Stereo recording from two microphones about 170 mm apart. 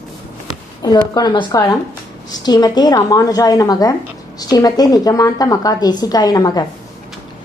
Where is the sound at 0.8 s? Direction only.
25° left (ahead or behind).